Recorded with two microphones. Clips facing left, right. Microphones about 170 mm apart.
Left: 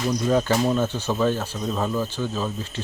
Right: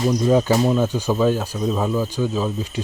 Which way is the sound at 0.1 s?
15° right (ahead or behind).